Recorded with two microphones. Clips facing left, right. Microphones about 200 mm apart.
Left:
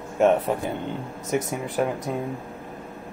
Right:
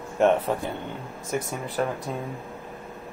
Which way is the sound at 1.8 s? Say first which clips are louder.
Left 2 dB; 10° left (ahead or behind).